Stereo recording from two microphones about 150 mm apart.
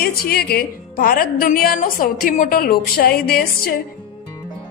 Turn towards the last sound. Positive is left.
turn(degrees=90)